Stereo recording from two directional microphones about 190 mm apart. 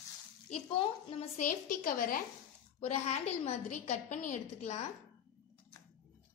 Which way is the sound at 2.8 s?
35° left (ahead or behind).